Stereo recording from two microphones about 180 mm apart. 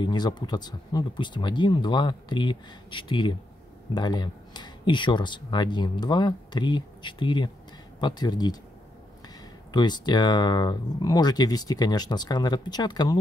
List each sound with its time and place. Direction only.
0.0 s speech: 25° left (ahead or behind)
9.7 s speech: 25° left (ahead or behind)